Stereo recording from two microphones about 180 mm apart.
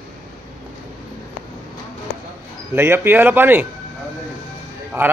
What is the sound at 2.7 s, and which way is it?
Speech, 10° right (ahead or behind).